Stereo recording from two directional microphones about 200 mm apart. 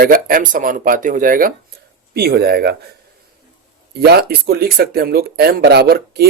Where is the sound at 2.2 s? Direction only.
55° right (ahead or behind).